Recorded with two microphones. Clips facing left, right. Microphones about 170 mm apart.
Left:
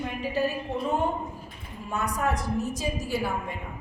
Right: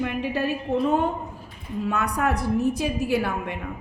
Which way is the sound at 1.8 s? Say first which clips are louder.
Right 3 dB; 65° right (ahead or behind).